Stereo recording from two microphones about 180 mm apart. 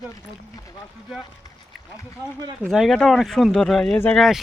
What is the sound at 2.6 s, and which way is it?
Speech, centre (ahead or behind).